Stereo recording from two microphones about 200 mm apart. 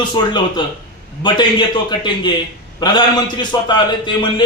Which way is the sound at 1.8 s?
20° left (ahead or behind).